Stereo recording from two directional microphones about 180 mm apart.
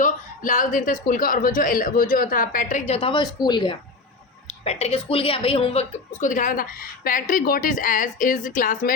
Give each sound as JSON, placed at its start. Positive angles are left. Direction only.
{"t": 0.0, "sound": "a sound", "side_deg": 45}
{"t": 1.0, "sound": "a woman's voice", "side_deg": 50}
{"t": 4.4, "sound": "a woman's voice", "side_deg": 35}
{"t": 6.1, "sound": "a woman's voice", "side_deg": 45}